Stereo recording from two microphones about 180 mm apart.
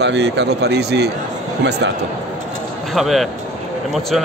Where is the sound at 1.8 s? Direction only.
85° right.